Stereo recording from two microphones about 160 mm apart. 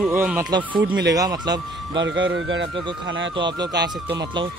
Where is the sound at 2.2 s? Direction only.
90° right.